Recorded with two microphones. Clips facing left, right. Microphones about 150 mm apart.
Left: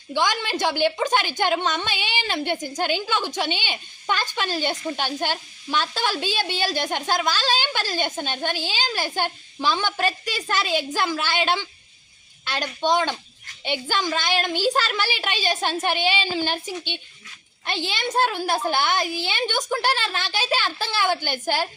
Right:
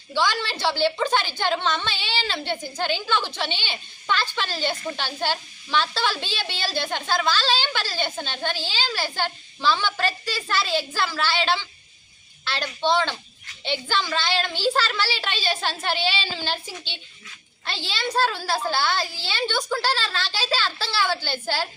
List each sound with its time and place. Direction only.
0.1 s a woman's voice: 15° left (ahead or behind)